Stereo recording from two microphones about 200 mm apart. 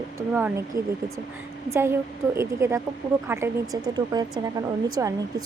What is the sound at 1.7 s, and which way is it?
A woman's voice, 15° right (ahead or behind).